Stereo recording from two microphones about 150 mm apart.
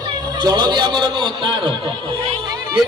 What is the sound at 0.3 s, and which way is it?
A man's voice, 30° right (ahead or behind).